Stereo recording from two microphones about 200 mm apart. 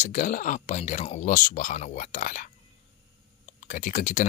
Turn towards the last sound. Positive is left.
turn(degrees=40)  # may be behind; listen again after turning